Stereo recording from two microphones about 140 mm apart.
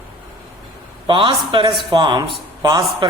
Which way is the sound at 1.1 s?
35° right (ahead or behind).